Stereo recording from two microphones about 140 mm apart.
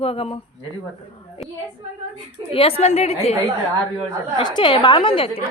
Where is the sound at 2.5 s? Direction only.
40° left (ahead or behind).